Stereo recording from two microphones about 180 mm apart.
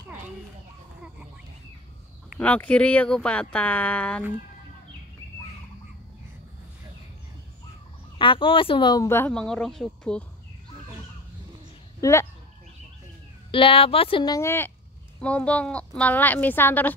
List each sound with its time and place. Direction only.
2.3 s speech: 10° left (ahead or behind)
8.2 s speech: 30° left (ahead or behind); by 10.2 s 5° left (ahead or behind)
12.0 s speech: 15° left (ahead or behind)
13.5 s speech: 30° left (ahead or behind); by 16.9 s 10° left (ahead or behind)